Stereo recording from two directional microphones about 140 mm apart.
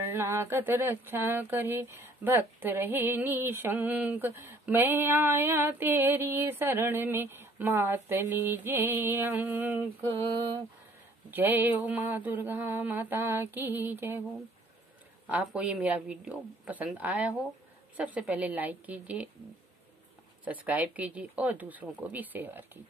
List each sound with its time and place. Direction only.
0.1 s speech: 20° right (ahead or behind)
11.2 s speech: 15° right (ahead or behind)
15.4 s speech: 10° right (ahead or behind)
20.6 s speech: 10° right (ahead or behind)